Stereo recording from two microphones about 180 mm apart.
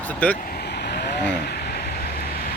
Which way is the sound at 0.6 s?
65° left (ahead or behind).